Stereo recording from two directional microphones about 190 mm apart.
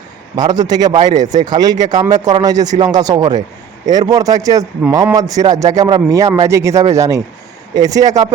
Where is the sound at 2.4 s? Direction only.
20° right (ahead or behind).